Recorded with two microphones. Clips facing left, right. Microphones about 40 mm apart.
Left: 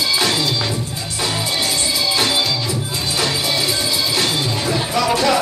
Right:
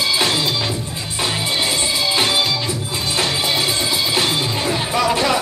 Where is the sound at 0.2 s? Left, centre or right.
Centre.